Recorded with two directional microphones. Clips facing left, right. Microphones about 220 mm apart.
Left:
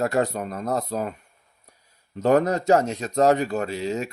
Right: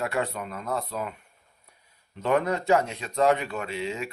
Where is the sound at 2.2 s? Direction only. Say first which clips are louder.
Left 5 dB; 40° left (ahead or behind).